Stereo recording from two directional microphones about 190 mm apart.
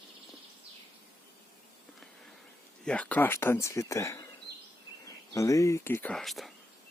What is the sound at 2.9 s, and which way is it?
Speech, 5° left (ahead or behind).